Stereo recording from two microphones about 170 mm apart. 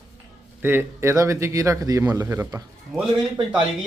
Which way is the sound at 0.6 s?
15° right (ahead or behind).